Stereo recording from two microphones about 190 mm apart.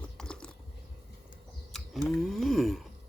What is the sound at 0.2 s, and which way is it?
Typing, 5° left (ahead or behind).